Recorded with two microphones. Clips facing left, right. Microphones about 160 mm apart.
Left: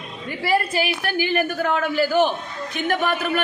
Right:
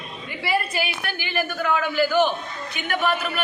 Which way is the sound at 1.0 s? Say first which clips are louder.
Left 6 dB; 45° left (ahead or behind).